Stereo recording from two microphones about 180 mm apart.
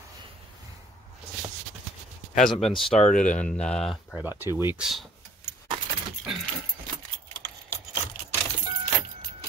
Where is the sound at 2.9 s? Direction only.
45° left (ahead or behind).